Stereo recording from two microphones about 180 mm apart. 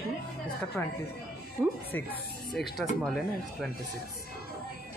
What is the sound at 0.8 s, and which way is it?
Speech, 5° left (ahead or behind).